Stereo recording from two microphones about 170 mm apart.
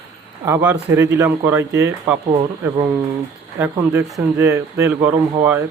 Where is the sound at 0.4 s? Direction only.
15° right (ahead or behind).